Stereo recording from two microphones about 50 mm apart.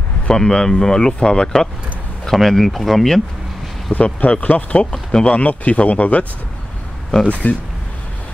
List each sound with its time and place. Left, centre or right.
0.3 s speech: centre
2.3 s speech: centre
3.9 s speech: left
7.4 s speech: left